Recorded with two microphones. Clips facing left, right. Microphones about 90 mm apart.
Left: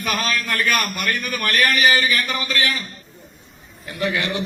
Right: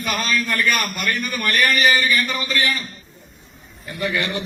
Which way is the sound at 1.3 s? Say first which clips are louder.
Even; 5° right (ahead or behind).